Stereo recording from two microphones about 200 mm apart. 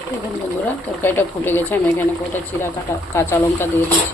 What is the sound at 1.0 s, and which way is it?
Speech, 10° left (ahead or behind).